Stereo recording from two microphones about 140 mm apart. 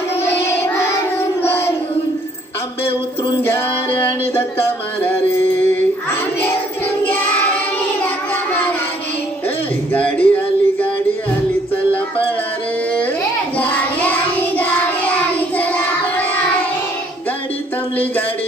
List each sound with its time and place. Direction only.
1.1 s child singing: 15° left (ahead or behind)
3.4 s music: 15° left (ahead or behind)
9.9 s music: 10° left (ahead or behind)
13.6 s child singing: 10° left (ahead or behind)